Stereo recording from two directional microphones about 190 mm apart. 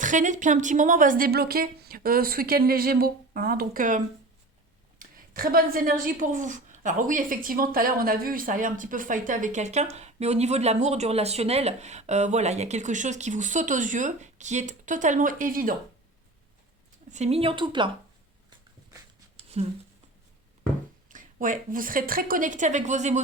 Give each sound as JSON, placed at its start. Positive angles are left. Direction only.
{"t": 0.0, "sound": "a woman's voice", "side_deg": -40}
{"t": 17.1, "sound": "speech", "side_deg": -35}
{"t": 19.6, "sound": "a woman's voice", "side_deg": -35}
{"t": 21.1, "sound": "speech", "side_deg": -45}